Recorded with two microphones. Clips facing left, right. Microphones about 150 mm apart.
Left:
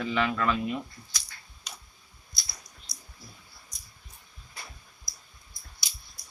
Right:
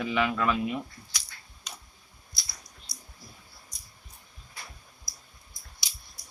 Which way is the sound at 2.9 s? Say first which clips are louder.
Right 2 dB; 75° right (ahead or behind).